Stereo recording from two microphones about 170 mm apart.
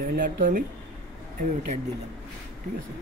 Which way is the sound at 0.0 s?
55° right (ahead or behind).